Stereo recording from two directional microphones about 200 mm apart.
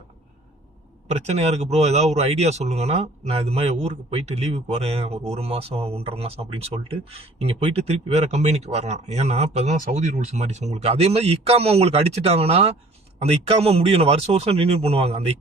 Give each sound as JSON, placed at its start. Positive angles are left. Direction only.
{"t": 1.1, "sound": "speech", "side_deg": -35}